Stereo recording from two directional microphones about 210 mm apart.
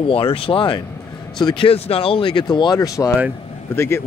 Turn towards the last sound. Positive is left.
turn(degrees=10)  # may be behind; listen again after turning